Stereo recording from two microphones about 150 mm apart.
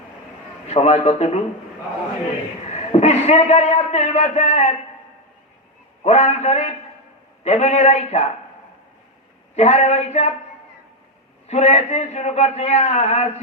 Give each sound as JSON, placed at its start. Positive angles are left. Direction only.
{"t": 0.7, "sound": "a man's voice", "side_deg": 45}
{"t": 2.7, "sound": "a man's voice", "side_deg": 45}
{"t": 6.0, "sound": "a man's voice", "side_deg": 45}
{"t": 9.6, "sound": "a man's voice", "side_deg": 45}
{"t": 11.4, "sound": "a man's voice", "side_deg": 45}